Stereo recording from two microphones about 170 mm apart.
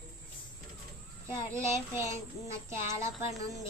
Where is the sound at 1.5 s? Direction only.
15° right (ahead or behind).